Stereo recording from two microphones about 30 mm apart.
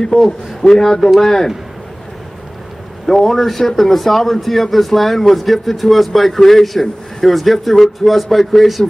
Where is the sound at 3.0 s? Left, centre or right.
Centre.